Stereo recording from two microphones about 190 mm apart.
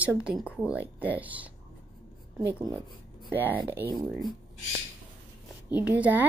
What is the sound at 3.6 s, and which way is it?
Speech, 10° right (ahead or behind).